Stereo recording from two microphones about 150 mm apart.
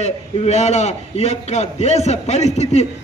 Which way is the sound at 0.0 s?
50° left (ahead or behind).